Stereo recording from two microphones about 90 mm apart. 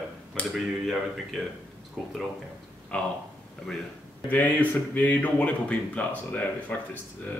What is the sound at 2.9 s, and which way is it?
Speech, 10° left (ahead or behind).